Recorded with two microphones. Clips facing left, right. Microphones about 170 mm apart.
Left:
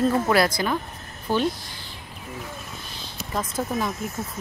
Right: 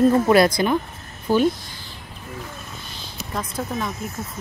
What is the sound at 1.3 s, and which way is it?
Speech, 10° right (ahead or behind).